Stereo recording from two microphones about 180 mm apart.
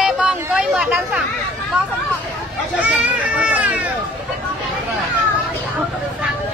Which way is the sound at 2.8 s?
10° right (ahead or behind).